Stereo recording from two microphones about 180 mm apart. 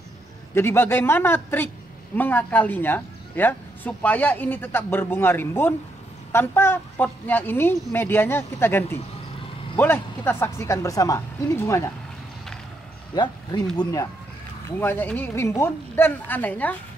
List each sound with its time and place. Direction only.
0.6 s speech: 15° left (ahead or behind)
13.1 s speech: 25° left (ahead or behind)
14.8 s speech: 10° left (ahead or behind)